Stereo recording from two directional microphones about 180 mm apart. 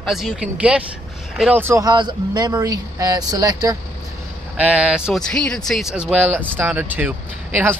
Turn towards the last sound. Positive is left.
turn(degrees=-10)  # may be behind; listen again after turning